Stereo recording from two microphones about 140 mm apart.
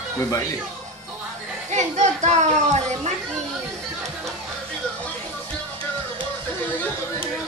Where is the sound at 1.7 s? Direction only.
55° right (ahead or behind).